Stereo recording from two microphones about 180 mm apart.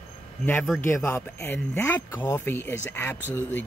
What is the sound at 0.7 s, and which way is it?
Speech, 15° left (ahead or behind).